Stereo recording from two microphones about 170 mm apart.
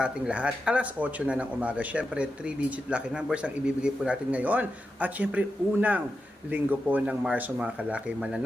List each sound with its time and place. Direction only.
0.0 s speech: 5° right (ahead or behind)